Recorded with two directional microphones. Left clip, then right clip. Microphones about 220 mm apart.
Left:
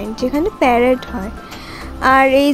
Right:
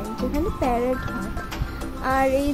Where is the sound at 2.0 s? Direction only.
25° left (ahead or behind).